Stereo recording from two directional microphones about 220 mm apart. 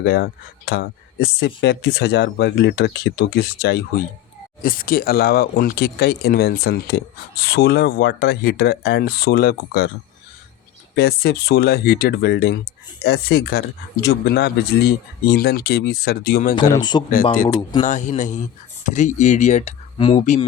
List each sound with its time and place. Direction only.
0.0 s speech: 50° left (ahead or behind)
10.9 s speech: 45° left (ahead or behind)
16.6 s speech: 15° left (ahead or behind)
17.3 s speech: 40° left (ahead or behind)